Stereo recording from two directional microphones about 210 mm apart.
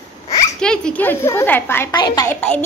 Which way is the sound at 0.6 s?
5° left (ahead or behind).